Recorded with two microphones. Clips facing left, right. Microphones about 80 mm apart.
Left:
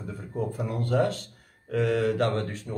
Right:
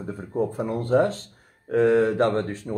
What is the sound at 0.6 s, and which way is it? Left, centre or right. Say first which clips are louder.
Speech: right 4 dB; right.